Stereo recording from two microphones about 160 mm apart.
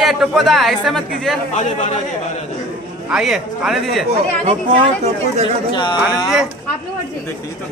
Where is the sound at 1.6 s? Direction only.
45° left (ahead or behind).